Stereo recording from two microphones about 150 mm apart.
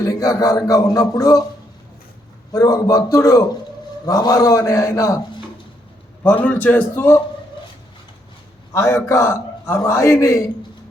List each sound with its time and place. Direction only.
0.0 s a man's voice: 25° left (ahead or behind)
2.5 s a man's voice: 25° left (ahead or behind)
6.2 s a man's voice: 10° left (ahead or behind)
8.7 s a man's voice: 20° left (ahead or behind)